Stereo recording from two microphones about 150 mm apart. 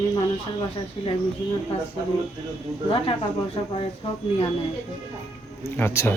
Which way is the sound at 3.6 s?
30° left (ahead or behind).